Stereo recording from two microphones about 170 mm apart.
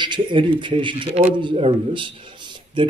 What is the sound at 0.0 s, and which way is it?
Speech, 30° right (ahead or behind).